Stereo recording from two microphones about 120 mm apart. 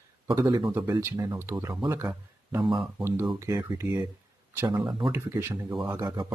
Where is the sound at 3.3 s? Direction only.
25° right (ahead or behind).